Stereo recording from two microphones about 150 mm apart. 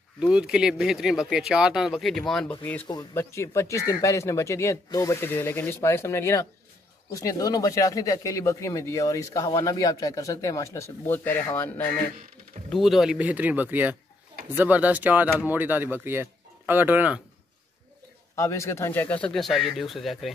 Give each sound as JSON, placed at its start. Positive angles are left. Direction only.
{"t": 0.2, "sound": "speech", "side_deg": -5}
{"t": 2.9, "sound": "speech", "side_deg": 20}
{"t": 12.6, "sound": "speech", "side_deg": 0}
{"t": 18.3, "sound": "speech", "side_deg": 20}
{"t": 19.2, "sound": "speech", "side_deg": 0}